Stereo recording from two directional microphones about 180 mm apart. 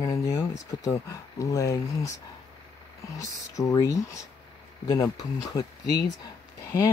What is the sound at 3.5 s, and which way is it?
Speech, 20° left (ahead or behind).